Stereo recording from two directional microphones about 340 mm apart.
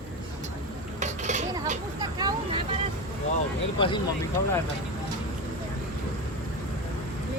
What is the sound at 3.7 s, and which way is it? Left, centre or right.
Vehicle, centre.